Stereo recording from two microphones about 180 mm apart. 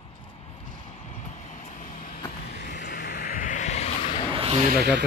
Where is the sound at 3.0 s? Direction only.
60° left (ahead or behind); by 4.3 s 35° left (ahead or behind).